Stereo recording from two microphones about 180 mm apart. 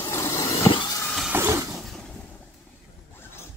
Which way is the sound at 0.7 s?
25° left (ahead or behind).